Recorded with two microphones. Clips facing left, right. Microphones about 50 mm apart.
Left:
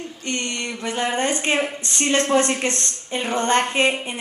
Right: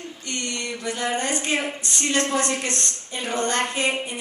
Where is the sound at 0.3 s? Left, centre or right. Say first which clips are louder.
Left 3 dB; left.